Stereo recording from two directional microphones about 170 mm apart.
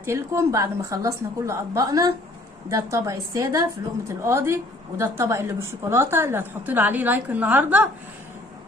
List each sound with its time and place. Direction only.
0.0 s a woman's voice: 15° right (ahead or behind)